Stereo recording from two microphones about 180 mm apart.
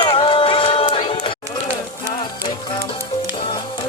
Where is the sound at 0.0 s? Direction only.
30° left (ahead or behind).